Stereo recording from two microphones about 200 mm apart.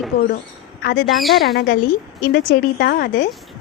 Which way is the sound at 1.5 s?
50° left (ahead or behind).